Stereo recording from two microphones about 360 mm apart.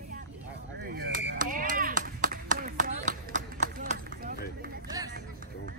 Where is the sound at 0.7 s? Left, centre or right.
Right.